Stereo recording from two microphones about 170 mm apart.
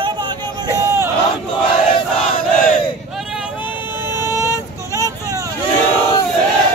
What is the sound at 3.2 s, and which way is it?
Vehicle, 5° right (ahead or behind).